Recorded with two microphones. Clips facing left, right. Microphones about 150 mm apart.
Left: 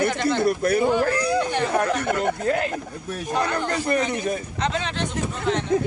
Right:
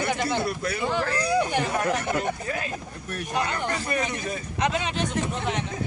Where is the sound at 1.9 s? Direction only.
60° left (ahead or behind).